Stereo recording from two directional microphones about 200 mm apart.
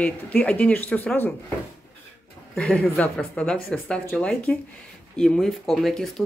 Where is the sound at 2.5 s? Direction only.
5° left (ahead or behind).